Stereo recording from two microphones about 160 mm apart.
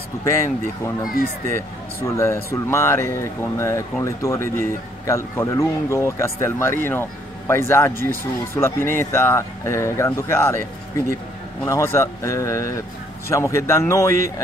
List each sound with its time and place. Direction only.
0.2 s speech: 15° left (ahead or behind)
2.0 s speech: 15° left (ahead or behind)